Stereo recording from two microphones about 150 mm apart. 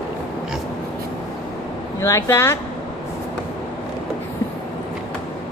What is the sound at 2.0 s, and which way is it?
Speech, 20° left (ahead or behind).